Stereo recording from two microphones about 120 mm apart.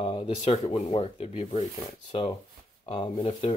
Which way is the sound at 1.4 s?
60° left (ahead or behind).